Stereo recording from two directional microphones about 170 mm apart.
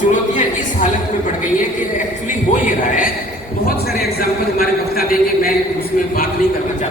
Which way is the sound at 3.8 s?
65° left (ahead or behind).